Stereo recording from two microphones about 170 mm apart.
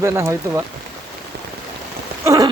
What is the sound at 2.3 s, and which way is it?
Rain, 20° right (ahead or behind).